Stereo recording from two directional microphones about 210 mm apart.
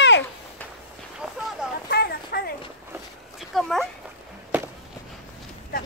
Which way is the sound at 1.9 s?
50° left (ahead or behind).